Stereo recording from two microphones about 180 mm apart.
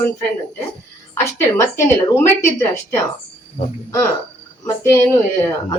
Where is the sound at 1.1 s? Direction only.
15° left (ahead or behind).